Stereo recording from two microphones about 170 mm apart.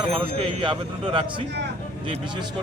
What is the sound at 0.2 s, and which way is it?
A man's voice, 30° right (ahead or behind).